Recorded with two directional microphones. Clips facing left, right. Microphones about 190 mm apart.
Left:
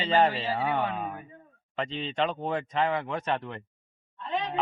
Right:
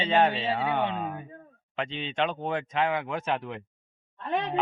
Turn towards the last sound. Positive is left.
turn(degrees=-55)  # may be behind; listen again after turning